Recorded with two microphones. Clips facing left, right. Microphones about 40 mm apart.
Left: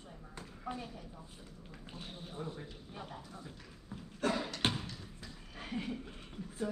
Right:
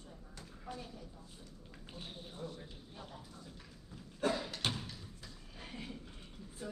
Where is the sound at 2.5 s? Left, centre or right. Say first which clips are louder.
Left 4 dB; left.